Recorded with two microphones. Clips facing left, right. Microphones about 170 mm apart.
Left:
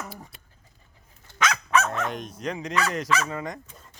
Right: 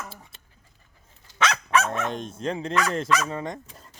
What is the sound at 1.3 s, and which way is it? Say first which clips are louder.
Fowl: right 2 dB; 55° left (ahead or behind).